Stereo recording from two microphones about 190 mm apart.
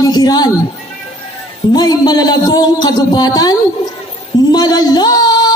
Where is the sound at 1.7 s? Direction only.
20° left (ahead or behind).